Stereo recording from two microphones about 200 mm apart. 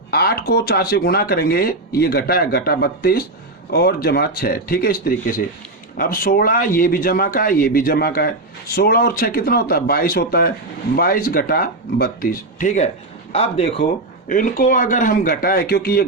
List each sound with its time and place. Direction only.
0.1 s a man's voice: 50° left (ahead or behind); by 13.8 s 30° left (ahead or behind)
14.3 s a man's voice: 40° left (ahead or behind)